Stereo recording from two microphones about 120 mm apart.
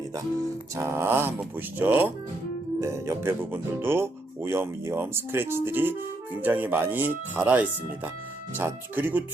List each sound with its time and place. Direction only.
0.8 s speech: 20° right (ahead or behind)